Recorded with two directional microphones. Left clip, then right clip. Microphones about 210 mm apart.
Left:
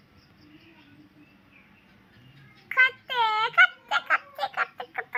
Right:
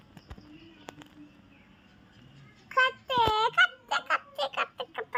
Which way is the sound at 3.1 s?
45° right (ahead or behind).